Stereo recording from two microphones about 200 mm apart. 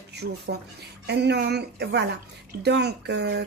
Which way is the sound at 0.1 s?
55° right (ahead or behind).